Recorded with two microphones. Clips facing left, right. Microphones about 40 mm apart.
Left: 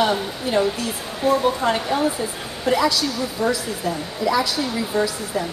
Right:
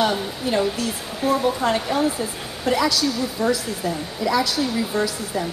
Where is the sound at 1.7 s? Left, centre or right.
Centre.